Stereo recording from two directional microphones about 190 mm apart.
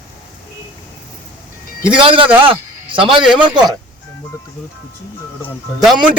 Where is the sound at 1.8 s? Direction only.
25° right (ahead or behind).